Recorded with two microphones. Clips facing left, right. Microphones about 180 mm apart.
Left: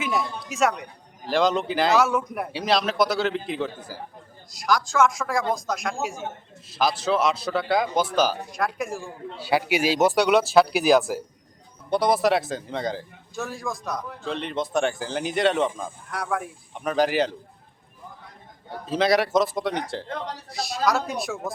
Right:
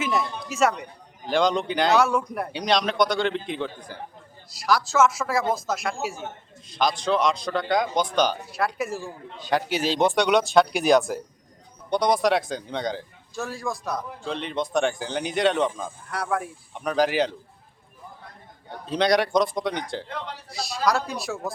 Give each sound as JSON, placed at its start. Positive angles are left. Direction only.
{"t": 0.0, "sound": "a man's voice", "side_deg": 0}
{"t": 9.4, "sound": "a man's voice", "side_deg": 10}
{"t": 18.7, "sound": "a man's voice", "side_deg": 5}
{"t": 20.1, "sound": "speech", "side_deg": 40}
{"t": 20.5, "sound": "a man's voice", "side_deg": 0}